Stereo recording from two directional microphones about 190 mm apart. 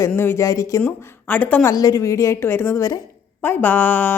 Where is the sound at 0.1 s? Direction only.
10° left (ahead or behind).